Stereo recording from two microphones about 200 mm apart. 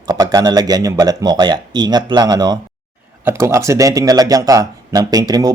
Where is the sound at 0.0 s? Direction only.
20° right (ahead or behind).